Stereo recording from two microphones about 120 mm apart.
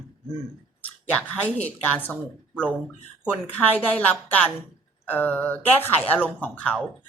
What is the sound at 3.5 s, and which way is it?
Speech, 15° left (ahead or behind).